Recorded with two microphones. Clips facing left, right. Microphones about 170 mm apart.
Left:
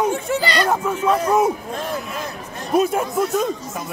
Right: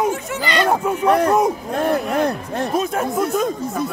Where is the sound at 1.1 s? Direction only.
65° right (ahead or behind).